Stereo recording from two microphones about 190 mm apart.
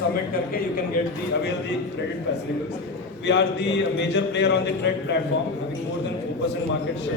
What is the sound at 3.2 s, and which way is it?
Speech, 65° left (ahead or behind).